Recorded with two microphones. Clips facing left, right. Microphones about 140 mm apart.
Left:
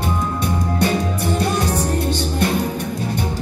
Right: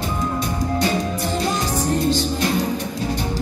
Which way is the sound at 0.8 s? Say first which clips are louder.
Left 4 dB; 60° left (ahead or behind).